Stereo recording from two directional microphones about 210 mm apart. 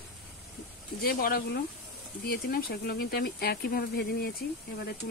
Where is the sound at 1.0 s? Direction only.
45° left (ahead or behind).